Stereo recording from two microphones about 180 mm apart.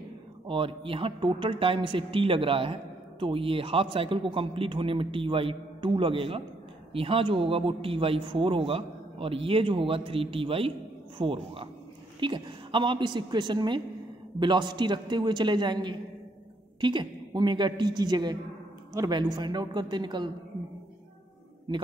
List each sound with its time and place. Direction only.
0.5 s speech: 30° right (ahead or behind)